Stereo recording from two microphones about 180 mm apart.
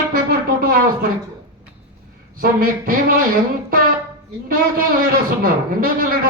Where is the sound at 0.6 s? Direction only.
55° right (ahead or behind).